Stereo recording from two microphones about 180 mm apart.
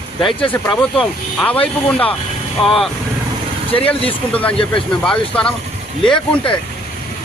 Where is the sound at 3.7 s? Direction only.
30° left (ahead or behind).